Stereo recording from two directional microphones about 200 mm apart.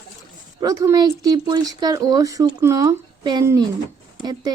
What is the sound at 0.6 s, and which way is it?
Speech, 15° right (ahead or behind).